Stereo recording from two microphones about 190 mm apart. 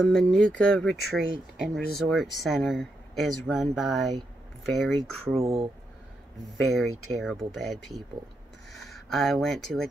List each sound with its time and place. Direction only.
0.0 s speech: 5° left (ahead or behind)
5.4 s speech: 30° right (ahead or behind)
6.6 s speech: centre (ahead or behind)
8.8 s speech: centre (ahead or behind)